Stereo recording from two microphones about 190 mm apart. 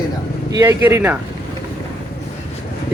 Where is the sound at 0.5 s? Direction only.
15° right (ahead or behind).